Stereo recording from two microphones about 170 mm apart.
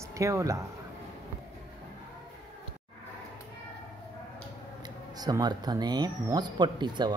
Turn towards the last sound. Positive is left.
turn(degrees=-25)  # may be behind; listen again after turning